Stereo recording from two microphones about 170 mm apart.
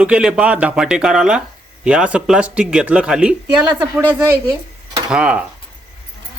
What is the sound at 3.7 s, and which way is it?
Speech, 25° right (ahead or behind).